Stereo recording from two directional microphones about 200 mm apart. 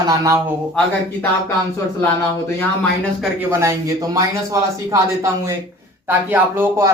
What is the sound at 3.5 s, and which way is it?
Speech, 15° right (ahead or behind).